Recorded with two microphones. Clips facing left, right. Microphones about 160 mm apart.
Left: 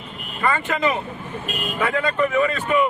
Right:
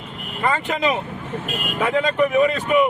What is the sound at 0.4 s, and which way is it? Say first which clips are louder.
Speech: even; 15° right (ahead or behind).